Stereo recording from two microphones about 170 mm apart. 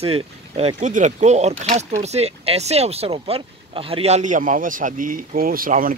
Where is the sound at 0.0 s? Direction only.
35° right (ahead or behind).